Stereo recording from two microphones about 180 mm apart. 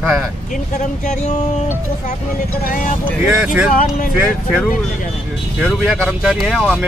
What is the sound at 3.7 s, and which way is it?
Speech, 50° left (ahead or behind).